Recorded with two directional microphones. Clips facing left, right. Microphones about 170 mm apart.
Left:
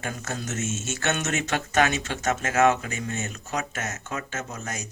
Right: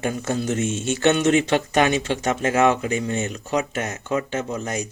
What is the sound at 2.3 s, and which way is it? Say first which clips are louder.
Speech: right 2 dB; 30° right (ahead or behind).